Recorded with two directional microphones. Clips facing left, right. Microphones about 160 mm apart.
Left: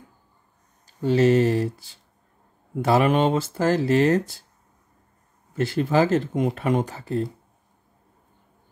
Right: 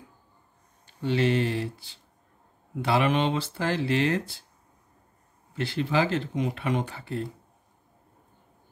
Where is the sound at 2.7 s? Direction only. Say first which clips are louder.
Left 5 dB; 45° left (ahead or behind).